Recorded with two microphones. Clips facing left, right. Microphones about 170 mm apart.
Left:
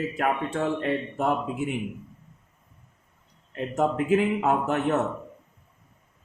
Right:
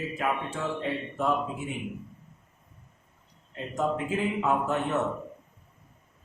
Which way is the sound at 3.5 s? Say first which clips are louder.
Left 4 dB; 65° left (ahead or behind).